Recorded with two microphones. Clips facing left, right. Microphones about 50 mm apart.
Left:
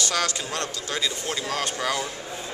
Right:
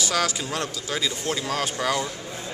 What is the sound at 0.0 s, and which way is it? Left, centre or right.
Speech, centre.